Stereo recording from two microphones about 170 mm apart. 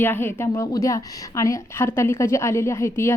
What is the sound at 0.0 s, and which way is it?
A woman's voice, 10° left (ahead or behind).